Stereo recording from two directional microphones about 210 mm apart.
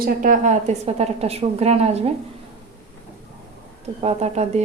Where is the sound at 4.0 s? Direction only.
30° right (ahead or behind).